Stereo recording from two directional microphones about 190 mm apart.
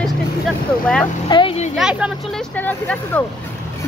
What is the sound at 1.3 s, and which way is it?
Speech, 30° left (ahead or behind).